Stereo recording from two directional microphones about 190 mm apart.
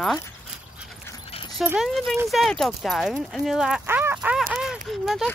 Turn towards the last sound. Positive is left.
turn(degrees=0)  # may be behind; listen again after turning